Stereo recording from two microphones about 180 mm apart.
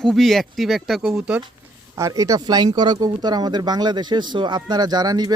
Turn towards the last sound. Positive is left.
turn(degrees=-20)  # may be behind; listen again after turning